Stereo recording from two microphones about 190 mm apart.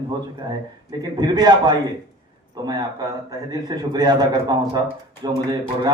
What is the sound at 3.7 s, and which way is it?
A man's voice, 20° right (ahead or behind).